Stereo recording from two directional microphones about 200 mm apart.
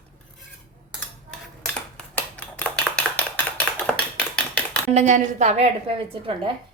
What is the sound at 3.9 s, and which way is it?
Typewriter, 5° left (ahead or behind).